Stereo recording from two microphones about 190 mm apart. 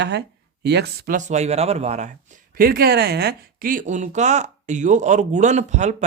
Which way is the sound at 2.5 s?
50° right (ahead or behind).